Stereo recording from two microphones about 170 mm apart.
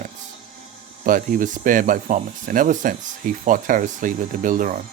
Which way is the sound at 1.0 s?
50° right (ahead or behind).